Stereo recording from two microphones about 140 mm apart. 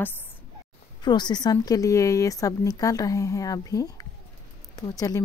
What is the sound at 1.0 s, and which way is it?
A woman's voice, 30° left (ahead or behind).